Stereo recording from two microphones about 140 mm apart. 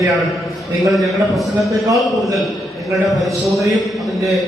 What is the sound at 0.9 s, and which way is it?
A man's voice, centre (ahead or behind).